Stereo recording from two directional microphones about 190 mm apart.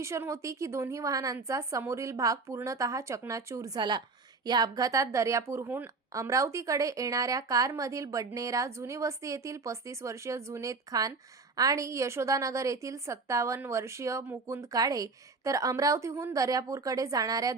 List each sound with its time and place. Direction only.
0.0 s a woman's voice: 15° right (ahead or behind)